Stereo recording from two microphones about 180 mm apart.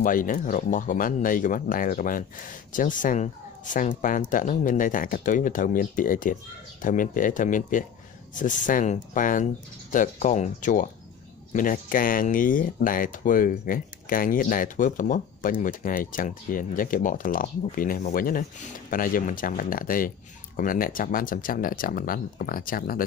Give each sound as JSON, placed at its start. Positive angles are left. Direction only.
{"t": 0.0, "sound": "speech", "side_deg": 50}